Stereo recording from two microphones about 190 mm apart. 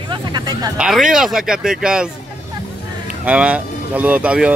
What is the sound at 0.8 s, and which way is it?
Speech, centre (ahead or behind).